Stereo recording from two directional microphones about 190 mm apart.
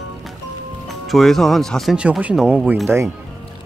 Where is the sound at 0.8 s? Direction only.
Centre (ahead or behind).